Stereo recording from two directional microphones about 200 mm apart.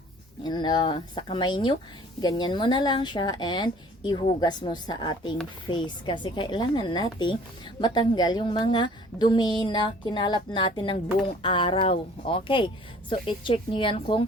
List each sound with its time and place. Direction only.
0.4 s a woman's voice: 20° left (ahead or behind)